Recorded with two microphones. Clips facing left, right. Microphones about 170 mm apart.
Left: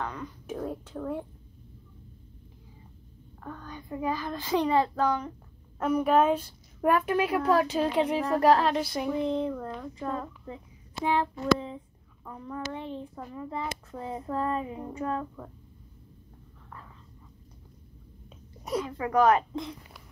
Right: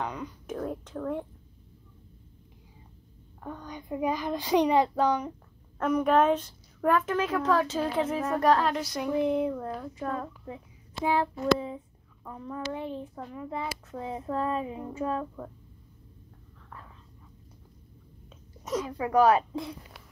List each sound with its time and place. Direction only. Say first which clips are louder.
0.0 s a child's voice: right 1 dB; 10° right (ahead or behind)
0.9 s speech: right 1 dB; 15° left (ahead or behind)
3.4 s a child's voice: right 2 dB; 15° right (ahead or behind)
5.8 s a child's voice: even; 10° left (ahead or behind)
8.5 s a sound: left 2 dB; 25° left (ahead or behind)
9.2 s a child's voice: right 2 dB; 10° right (ahead or behind)
18.6 s a sound: even; 10° left (ahead or behind)
18.9 s a child's voice: right 1 dB; 10° right (ahead or behind)